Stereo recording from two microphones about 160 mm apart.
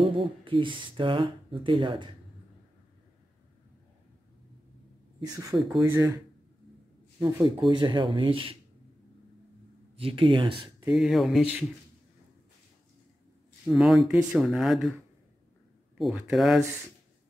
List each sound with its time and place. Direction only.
0.0 s speech: 30° right (ahead or behind)
5.2 s speech: 20° right (ahead or behind)
9.9 s speech: 35° right (ahead or behind)
10.9 s speech: centre (ahead or behind)
13.7 s speech: centre (ahead or behind)
16.0 s speech: 5° right (ahead or behind)